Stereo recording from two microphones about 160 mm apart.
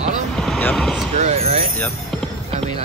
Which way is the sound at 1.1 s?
40° right (ahead or behind).